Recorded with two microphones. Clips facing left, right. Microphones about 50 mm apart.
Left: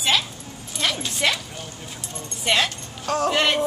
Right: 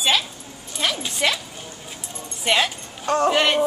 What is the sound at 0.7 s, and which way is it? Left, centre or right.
Speech, centre.